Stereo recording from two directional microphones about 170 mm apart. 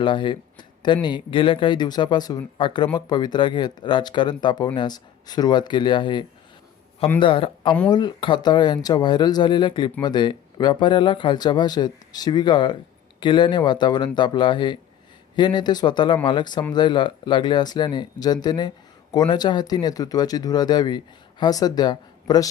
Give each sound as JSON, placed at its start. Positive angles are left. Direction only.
{"t": 0.0, "sound": "speech", "side_deg": 30}